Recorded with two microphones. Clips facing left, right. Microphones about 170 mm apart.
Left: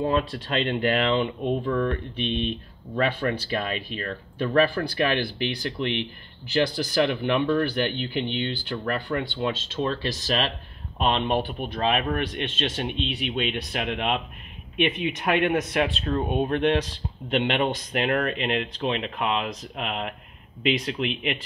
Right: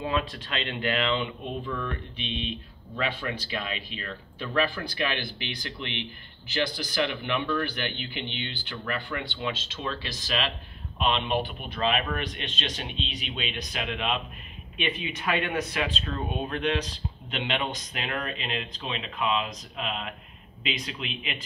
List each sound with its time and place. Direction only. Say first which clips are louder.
0.3 s speech: left 8 dB; 50° left (ahead or behind)